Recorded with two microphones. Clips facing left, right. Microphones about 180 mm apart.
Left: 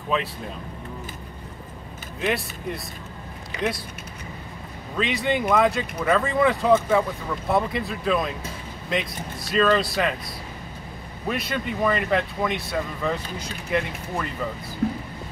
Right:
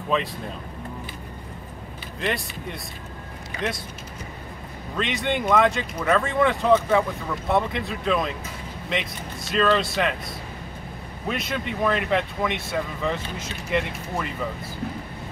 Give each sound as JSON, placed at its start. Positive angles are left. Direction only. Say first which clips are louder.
{"t": 0.1, "sound": "speech", "louder": "right 1 dB", "side_deg": 0}
{"t": 2.1, "sound": "speech", "louder": "left 2 dB", "side_deg": 0}
{"t": 4.9, "sound": "speech", "louder": "left 2 dB", "side_deg": 0}
{"t": 9.5, "sound": "speech", "louder": "left 1 dB", "side_deg": 0}
{"t": 11.2, "sound": "speech", "louder": "left 1 dB", "side_deg": 0}